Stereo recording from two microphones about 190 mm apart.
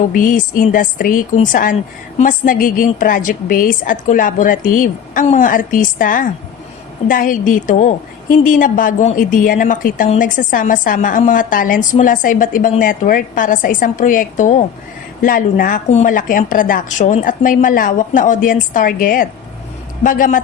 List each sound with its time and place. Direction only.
0.1 s a woman's voice: 45° left (ahead or behind)